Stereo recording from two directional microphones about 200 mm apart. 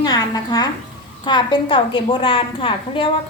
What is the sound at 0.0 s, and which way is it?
A woman's voice, 20° left (ahead or behind).